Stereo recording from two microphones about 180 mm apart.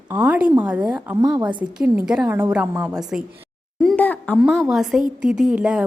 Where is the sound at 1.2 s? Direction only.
25° right (ahead or behind).